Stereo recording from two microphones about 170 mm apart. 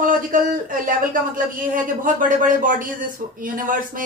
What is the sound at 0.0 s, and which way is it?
Speech, 55° right (ahead or behind).